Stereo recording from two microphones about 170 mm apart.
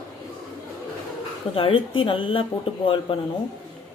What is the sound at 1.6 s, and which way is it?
Speech, 30° left (ahead or behind).